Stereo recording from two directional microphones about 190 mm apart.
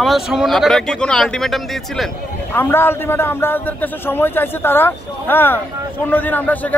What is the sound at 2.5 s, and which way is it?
A man's voice, 10° left (ahead or behind).